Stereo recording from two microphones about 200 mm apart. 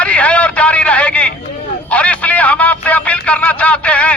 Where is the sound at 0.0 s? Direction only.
5° left (ahead or behind).